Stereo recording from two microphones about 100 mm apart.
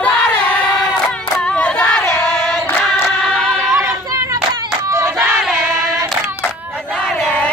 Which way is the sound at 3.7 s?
30° right (ahead or behind).